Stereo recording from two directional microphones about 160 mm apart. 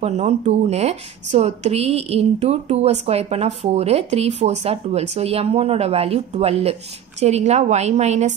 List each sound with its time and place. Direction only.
0.0 s speech: 45° right (ahead or behind)